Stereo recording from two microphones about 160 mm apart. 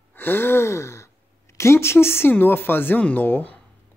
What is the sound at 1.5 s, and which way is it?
Speech, 15° left (ahead or behind).